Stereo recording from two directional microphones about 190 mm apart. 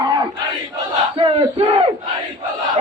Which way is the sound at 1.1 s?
30° right (ahead or behind).